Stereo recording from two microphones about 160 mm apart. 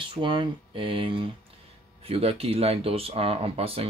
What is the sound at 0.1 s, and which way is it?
Speech, 30° right (ahead or behind).